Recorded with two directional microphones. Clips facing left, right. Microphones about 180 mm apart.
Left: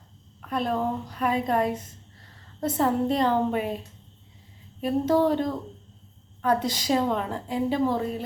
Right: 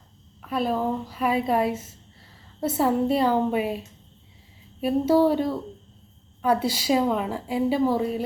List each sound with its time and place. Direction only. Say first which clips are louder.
0.4 s a woman's voice: right 2 dB; 5° right (ahead or behind)
4.8 s a woman's voice: right 3 dB; 10° right (ahead or behind)